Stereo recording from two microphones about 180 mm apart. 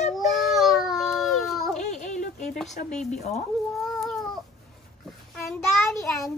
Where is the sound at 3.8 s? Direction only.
Centre (ahead or behind).